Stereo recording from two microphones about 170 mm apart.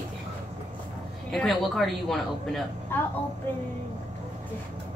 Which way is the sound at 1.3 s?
Centre (ahead or behind).